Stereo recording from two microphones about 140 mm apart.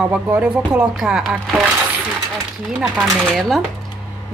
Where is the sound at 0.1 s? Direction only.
10° right (ahead or behind).